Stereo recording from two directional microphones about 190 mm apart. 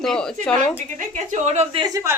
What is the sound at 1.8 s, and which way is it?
Speech, 15° right (ahead or behind).